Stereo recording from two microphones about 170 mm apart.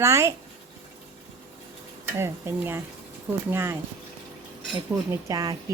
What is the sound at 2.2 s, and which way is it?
A woman's voice, 15° right (ahead or behind).